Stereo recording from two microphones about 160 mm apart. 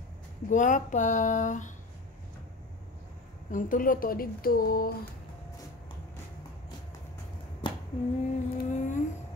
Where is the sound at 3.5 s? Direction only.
55° left (ahead or behind).